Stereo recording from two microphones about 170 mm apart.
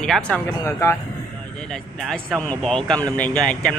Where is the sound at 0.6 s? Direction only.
15° left (ahead or behind).